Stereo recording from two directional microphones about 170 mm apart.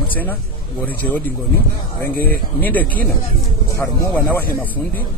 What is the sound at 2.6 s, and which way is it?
A man's voice, 10° left (ahead or behind).